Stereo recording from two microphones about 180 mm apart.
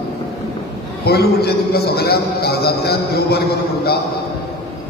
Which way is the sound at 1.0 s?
60° left (ahead or behind).